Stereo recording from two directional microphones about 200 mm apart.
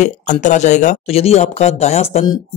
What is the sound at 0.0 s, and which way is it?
Speech, 35° left (ahead or behind).